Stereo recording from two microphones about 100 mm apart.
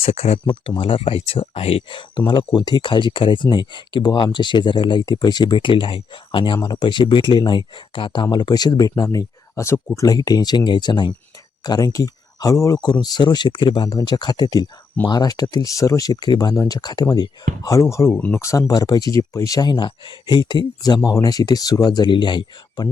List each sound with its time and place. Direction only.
0.0 s speech: 90° left
0.8 s speech: 60° left (ahead or behind); by 12.8 s 35° left (ahead or behind)
12.8 s speech: 45° left (ahead or behind)